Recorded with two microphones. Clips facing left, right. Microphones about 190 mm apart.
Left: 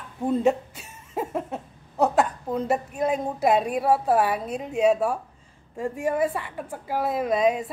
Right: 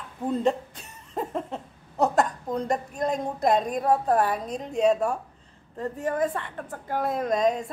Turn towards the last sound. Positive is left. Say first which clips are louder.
# left 2 dB
turn(degrees=5)  # may be behind; listen again after turning